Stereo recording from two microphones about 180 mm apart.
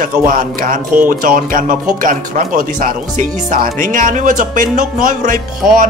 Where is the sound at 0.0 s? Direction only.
45° right (ahead or behind).